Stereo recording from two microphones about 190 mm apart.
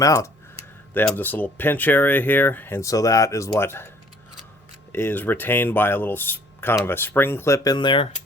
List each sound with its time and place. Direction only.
0.0 s speech: 15° left (ahead or behind)
4.9 s speech: 10° left (ahead or behind)